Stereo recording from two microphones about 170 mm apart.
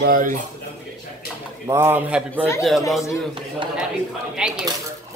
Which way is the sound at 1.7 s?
15° right (ahead or behind).